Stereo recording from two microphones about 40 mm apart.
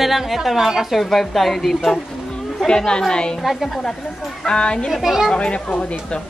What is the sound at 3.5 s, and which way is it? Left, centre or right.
Speech, centre.